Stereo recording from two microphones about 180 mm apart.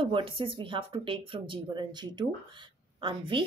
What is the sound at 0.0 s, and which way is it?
A woman's voice, 30° right (ahead or behind).